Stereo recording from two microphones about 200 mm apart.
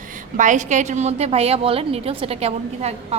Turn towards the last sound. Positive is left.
turn(degrees=-30)  # may be behind; listen again after turning